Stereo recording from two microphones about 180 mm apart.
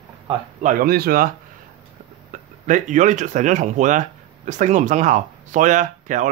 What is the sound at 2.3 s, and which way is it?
Speech, 45° right (ahead or behind).